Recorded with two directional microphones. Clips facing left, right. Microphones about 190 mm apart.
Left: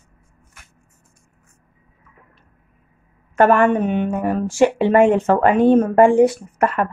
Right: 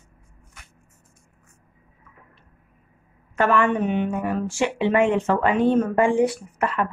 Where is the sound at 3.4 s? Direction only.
50° left (ahead or behind).